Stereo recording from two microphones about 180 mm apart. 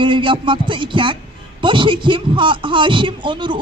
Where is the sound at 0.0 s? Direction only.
30° right (ahead or behind).